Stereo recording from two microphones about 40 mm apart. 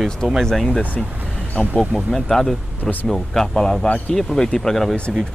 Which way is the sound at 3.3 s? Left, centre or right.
Centre.